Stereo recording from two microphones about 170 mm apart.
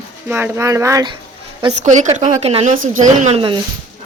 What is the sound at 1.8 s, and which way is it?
A woman's voice, 45° right (ahead or behind).